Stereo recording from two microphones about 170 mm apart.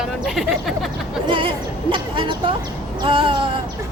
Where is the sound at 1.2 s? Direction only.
30° right (ahead or behind).